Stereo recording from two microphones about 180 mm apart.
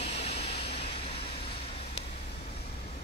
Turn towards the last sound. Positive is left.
turn(degrees=35)  # may be behind; listen again after turning